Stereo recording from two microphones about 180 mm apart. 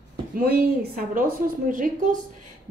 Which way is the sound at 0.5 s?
60° right (ahead or behind).